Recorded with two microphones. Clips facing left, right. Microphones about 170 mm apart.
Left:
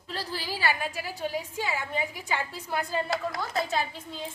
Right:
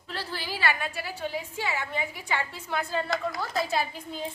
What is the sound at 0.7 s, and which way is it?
Speech, 40° left (ahead or behind).